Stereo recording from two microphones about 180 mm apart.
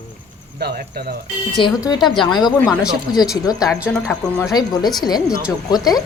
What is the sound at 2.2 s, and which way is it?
Speech, 25° left (ahead or behind).